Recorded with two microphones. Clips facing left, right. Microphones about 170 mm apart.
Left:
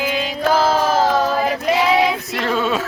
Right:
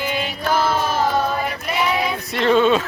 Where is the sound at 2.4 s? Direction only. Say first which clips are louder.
Right 6 dB; 5° left (ahead or behind).